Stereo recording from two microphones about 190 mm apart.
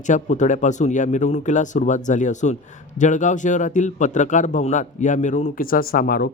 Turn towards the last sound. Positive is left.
turn(degrees=50)  # may be behind; listen again after turning